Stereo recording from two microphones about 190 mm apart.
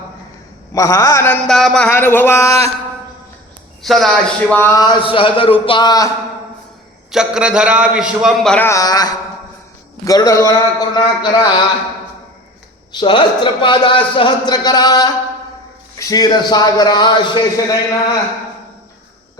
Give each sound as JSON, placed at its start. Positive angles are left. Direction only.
{"t": 0.7, "sound": "a sound", "side_deg": 15}
{"t": 3.8, "sound": "a man's voice", "side_deg": 0}
{"t": 4.5, "sound": "a man's voice", "side_deg": 15}
{"t": 7.1, "sound": "a man's voice", "side_deg": -5}
{"t": 8.5, "sound": "a man's voice", "side_deg": 15}
{"t": 12.9, "sound": "a man's voice", "side_deg": 25}